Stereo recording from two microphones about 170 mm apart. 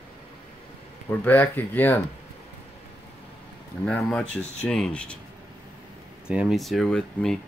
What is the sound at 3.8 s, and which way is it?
Speech, 5° left (ahead or behind).